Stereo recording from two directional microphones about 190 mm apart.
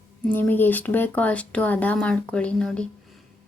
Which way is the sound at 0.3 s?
10° left (ahead or behind).